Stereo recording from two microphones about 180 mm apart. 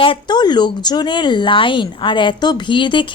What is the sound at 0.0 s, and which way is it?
A woman's voice, 25° left (ahead or behind).